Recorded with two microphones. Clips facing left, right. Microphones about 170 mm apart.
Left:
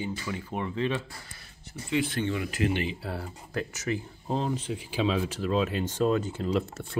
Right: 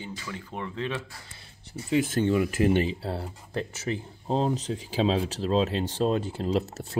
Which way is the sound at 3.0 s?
30° right (ahead or behind).